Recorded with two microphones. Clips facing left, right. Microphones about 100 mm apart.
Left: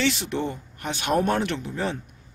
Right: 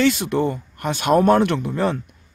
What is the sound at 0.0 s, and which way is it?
Speech, 50° right (ahead or behind).